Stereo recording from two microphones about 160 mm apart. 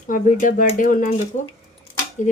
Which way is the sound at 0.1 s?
50° left (ahead or behind).